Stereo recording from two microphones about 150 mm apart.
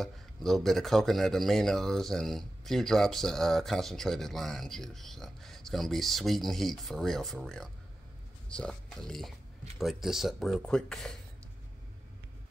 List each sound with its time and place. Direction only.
0.0 s a man's voice: centre (ahead or behind)